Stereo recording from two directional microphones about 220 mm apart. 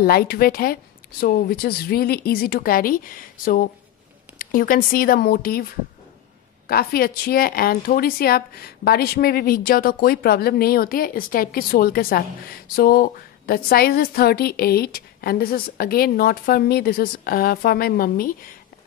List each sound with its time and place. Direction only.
0.0 s a woman's voice: 45° left (ahead or behind)
6.7 s a woman's voice: 45° left (ahead or behind)